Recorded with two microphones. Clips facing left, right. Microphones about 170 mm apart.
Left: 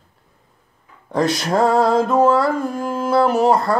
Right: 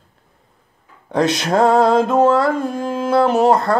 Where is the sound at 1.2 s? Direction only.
20° right (ahead or behind).